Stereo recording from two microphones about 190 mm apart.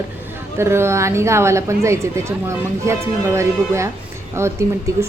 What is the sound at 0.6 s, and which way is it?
A woman's voice, 15° right (ahead or behind).